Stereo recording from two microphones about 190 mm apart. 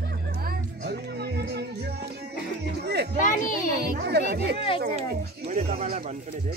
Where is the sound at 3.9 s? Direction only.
60° right (ahead or behind).